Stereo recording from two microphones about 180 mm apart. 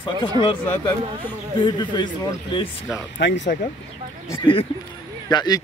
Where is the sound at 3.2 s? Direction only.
85° left.